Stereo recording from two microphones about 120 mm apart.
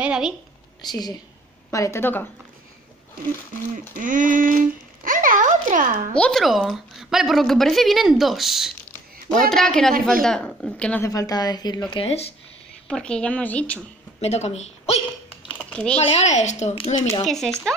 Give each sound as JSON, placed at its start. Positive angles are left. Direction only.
{"t": 0.0, "sound": "a woman's voice", "side_deg": -5}
{"t": 0.8, "sound": "a woman's voice", "side_deg": 35}
{"t": 3.9, "sound": "a sound", "side_deg": -90}
{"t": 6.1, "sound": "a woman's voice", "side_deg": 5}
{"t": 11.1, "sound": "a woman's voice", "side_deg": 30}
{"t": 11.9, "sound": "speech", "side_deg": 55}
{"t": 12.8, "sound": "speech", "side_deg": 10}
{"t": 14.2, "sound": "speech", "side_deg": 65}
{"t": 15.5, "sound": "a sound", "side_deg": 10}
{"t": 16.0, "sound": "speech", "side_deg": 60}
{"t": 16.7, "sound": "speech", "side_deg": 50}
{"t": 17.2, "sound": "a woman's voice", "side_deg": 5}